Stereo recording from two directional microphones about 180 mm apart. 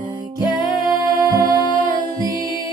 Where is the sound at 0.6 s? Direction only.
50° right (ahead or behind).